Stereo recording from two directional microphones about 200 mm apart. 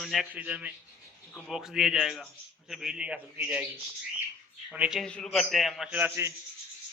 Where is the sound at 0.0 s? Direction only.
Centre (ahead or behind).